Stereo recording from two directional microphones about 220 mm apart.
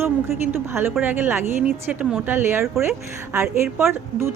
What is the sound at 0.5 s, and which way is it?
A woman's voice, 10° right (ahead or behind).